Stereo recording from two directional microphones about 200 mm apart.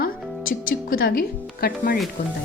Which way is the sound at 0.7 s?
45° left (ahead or behind).